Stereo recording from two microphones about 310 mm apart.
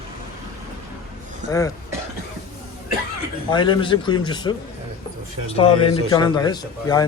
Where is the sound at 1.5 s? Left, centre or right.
Centre.